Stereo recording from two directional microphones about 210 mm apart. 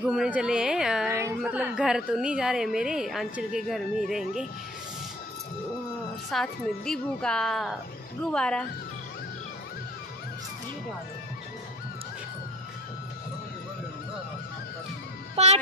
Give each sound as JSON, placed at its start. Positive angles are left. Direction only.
{"t": 0.0, "sound": "a woman's voice", "side_deg": -5}
{"t": 6.3, "sound": "a woman's voice", "side_deg": 5}
{"t": 15.3, "sound": "a child's voice", "side_deg": -30}